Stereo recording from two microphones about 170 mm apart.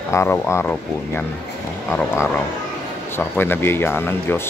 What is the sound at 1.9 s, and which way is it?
Speech, 15° left (ahead or behind).